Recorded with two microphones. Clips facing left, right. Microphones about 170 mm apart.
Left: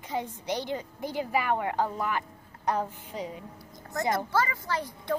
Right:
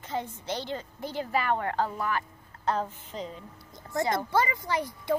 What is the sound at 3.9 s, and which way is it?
A child's voice, 20° right (ahead or behind).